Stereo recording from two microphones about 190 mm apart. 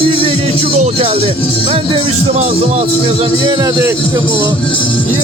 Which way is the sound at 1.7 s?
30° right (ahead or behind).